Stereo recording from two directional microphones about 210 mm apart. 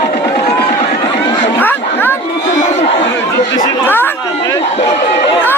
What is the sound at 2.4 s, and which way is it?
Crowd, 35° left (ahead or behind).